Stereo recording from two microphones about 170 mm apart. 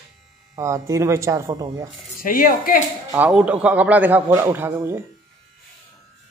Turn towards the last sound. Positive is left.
turn(degrees=-15)  # may be behind; listen again after turning